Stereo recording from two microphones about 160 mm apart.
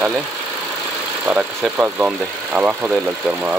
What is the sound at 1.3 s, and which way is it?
Speech, 10° right (ahead or behind).